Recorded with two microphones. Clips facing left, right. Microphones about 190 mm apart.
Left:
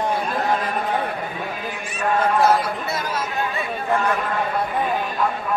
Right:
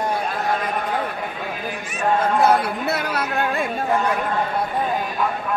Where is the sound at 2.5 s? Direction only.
65° right (ahead or behind).